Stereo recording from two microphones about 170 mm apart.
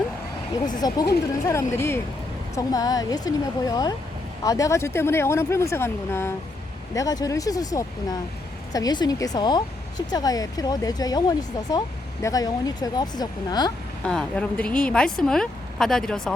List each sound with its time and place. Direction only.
0.8 s speech: 25° left (ahead or behind)
14.0 s speech: 5° left (ahead or behind)